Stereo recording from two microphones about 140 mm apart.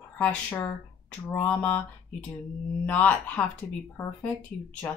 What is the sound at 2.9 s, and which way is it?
Speech, 10° left (ahead or behind).